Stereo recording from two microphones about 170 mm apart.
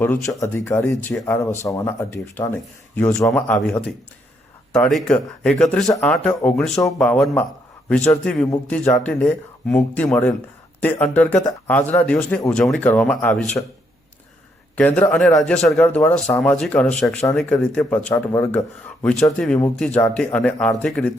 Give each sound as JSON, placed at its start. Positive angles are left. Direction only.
{"t": 0.0, "sound": "speech", "side_deg": 15}
{"t": 14.8, "sound": "speech", "side_deg": 10}